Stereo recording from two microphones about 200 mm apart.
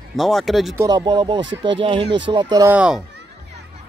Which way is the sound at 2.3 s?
20° right (ahead or behind).